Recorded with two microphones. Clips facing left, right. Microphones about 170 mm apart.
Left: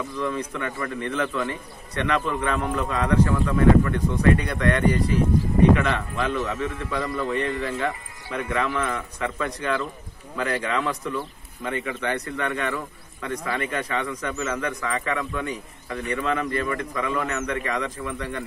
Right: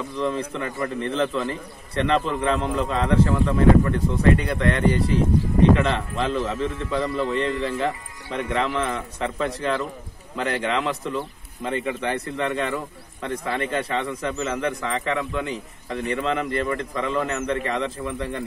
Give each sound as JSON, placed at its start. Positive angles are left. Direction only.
{"t": 0.1, "sound": "a man's voice", "side_deg": -30}